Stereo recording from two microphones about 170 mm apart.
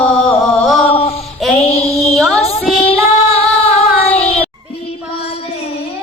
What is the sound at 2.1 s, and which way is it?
Music, centre (ahead or behind).